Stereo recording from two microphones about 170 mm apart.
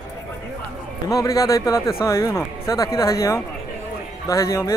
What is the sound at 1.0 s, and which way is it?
Speech, 20° left (ahead or behind).